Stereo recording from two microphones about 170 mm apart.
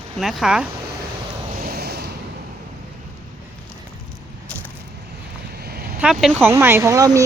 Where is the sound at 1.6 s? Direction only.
65° right (ahead or behind).